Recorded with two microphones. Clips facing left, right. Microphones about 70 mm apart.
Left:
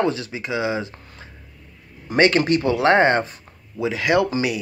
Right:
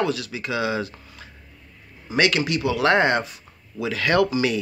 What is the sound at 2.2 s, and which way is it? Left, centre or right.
Speech, left.